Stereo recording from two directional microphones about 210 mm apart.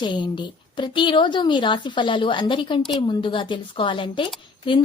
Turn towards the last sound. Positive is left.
turn(degrees=25)  # may be behind; listen again after turning